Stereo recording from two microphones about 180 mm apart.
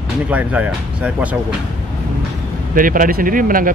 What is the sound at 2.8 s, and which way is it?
Speech, 50° right (ahead or behind).